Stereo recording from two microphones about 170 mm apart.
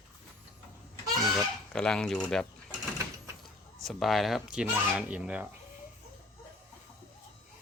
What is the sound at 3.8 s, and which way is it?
Speech, centre (ahead or behind).